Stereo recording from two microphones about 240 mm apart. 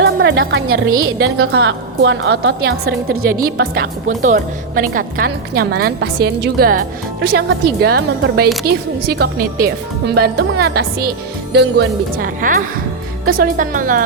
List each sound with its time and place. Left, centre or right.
0.0 s a woman's voice: right